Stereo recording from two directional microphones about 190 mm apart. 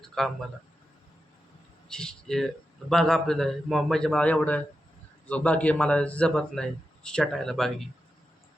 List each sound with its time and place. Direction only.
0.0 s a man's voice: centre (ahead or behind)
1.9 s a man's voice: 5° left (ahead or behind)